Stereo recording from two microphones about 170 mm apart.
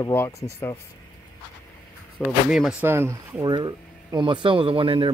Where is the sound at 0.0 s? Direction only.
15° left (ahead or behind).